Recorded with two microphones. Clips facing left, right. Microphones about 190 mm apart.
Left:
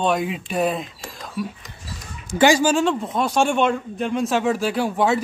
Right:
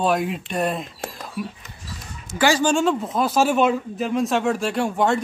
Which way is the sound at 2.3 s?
15° left (ahead or behind).